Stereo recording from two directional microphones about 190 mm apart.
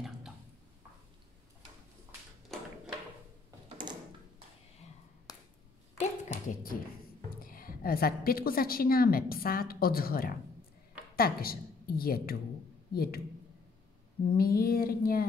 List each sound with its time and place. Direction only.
3.6 s mechanisms: 25° right (ahead or behind)
5.3 s finger snapping: 20° left (ahead or behind)
5.9 s hands: 45° left (ahead or behind)
7.4 s a woman's voice: 50° left (ahead or behind)
14.3 s a woman's voice: 50° left (ahead or behind)